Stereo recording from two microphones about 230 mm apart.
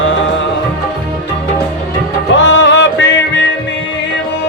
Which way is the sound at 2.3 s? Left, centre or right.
Left.